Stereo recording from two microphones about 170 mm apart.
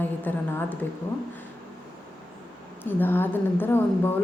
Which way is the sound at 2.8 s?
10° left (ahead or behind).